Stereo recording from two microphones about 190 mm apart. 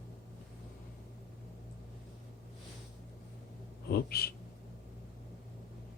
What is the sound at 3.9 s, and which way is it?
Speech, 55° left (ahead or behind).